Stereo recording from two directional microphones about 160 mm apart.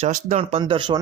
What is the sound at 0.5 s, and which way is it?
Speech, 30° right (ahead or behind).